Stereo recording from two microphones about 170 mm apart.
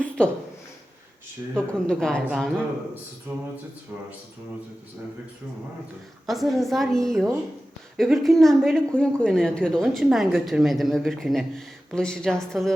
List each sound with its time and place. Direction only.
1.5 s speech: 5° left (ahead or behind)
2.2 s speech: 10° right (ahead or behind)
6.2 s speech: centre (ahead or behind)